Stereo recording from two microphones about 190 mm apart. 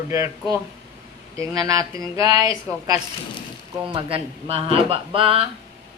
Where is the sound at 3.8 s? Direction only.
30° right (ahead or behind).